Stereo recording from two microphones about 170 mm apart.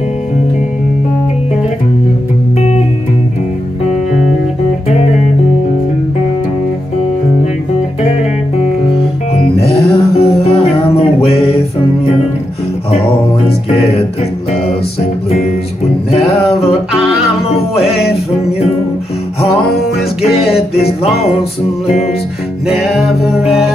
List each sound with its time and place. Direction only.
9.4 s music: 35° left (ahead or behind)
22.7 s music: centre (ahead or behind)